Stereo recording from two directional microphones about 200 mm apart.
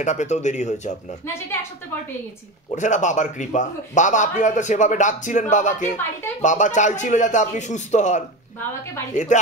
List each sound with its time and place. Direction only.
0.0 s a man's voice: 35° left (ahead or behind)
2.7 s a man's voice: 35° left (ahead or behind)